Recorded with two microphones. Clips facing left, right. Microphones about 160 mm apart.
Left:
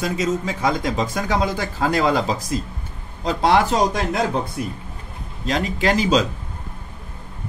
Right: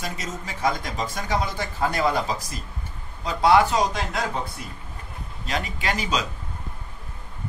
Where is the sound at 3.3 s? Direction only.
90° left.